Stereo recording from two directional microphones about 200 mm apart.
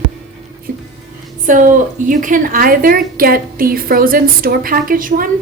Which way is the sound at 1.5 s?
40° right (ahead or behind).